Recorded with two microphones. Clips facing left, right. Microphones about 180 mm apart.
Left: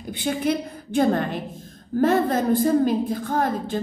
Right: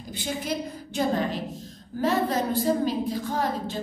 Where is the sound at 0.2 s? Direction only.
60° left (ahead or behind).